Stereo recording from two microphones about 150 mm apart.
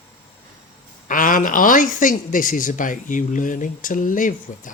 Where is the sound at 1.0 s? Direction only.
65° left (ahead or behind).